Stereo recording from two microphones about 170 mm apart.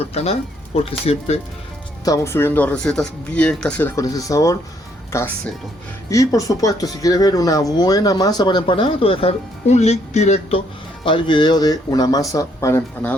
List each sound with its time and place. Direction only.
0.1 s speech: 35° left (ahead or behind)
2.0 s speech: 15° left (ahead or behind); by 10.6 s 40° left (ahead or behind)
11.0 s speech: 30° left (ahead or behind); by 13.1 s 10° left (ahead or behind)